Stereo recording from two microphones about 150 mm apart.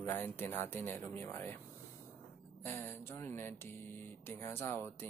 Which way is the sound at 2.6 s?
15° left (ahead or behind).